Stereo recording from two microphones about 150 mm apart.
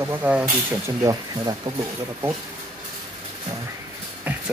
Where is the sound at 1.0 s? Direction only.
25° right (ahead or behind).